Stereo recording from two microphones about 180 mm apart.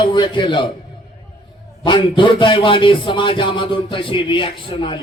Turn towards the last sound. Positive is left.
turn(degrees=30)  # may be behind; listen again after turning